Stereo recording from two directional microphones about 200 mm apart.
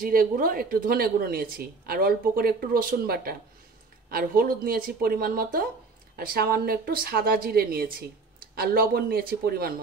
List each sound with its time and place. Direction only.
0.0 s speech: 45° right (ahead or behind)